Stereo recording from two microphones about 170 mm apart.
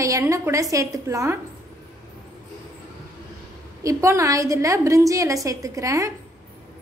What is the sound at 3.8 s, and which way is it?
A woman's voice, 20° right (ahead or behind).